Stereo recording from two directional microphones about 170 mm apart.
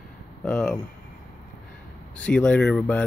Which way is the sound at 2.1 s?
5° left (ahead or behind).